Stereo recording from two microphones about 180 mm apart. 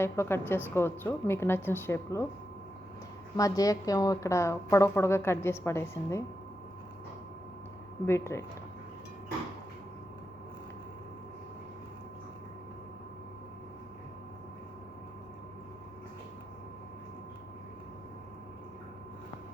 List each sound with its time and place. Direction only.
0.0 s a woman's voice: 15° left (ahead or behind)
3.3 s a woman's voice: 20° left (ahead or behind)
8.0 s a woman's voice: 15° left (ahead or behind)